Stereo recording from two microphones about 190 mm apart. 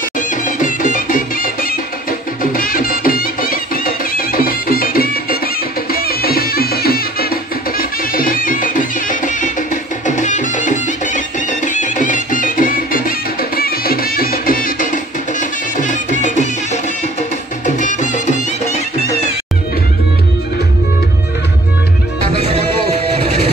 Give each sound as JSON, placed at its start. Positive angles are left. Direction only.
{"t": 0.3, "sound": "music", "side_deg": 45}
{"t": 22.4, "sound": "music", "side_deg": -30}